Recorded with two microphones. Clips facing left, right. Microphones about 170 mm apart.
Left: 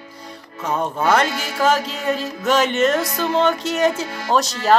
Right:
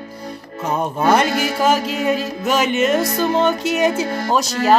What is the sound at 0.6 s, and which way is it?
Music, 15° right (ahead or behind).